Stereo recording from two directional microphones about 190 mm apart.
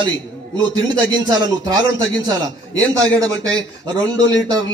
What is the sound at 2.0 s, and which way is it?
Speech, 80° left.